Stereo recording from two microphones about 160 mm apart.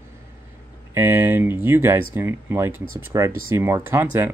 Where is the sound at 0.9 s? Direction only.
15° right (ahead or behind).